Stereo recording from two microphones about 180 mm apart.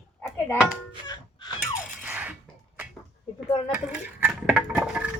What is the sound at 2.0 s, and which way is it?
Dishes, 10° right (ahead or behind).